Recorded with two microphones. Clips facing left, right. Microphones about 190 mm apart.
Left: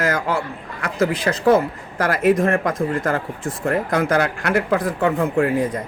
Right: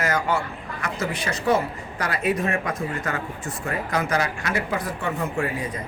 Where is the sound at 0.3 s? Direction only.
90° left.